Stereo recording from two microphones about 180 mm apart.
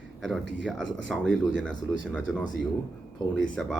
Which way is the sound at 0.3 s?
Centre (ahead or behind).